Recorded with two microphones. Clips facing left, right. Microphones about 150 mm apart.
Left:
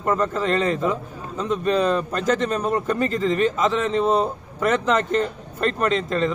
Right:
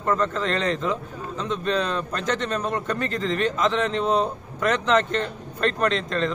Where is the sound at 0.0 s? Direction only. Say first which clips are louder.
Left 2 dB; 10° left (ahead or behind).